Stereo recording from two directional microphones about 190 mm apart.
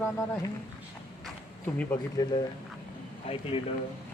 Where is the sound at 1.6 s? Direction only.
10° left (ahead or behind).